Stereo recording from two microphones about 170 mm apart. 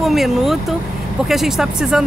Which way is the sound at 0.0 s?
Centre (ahead or behind).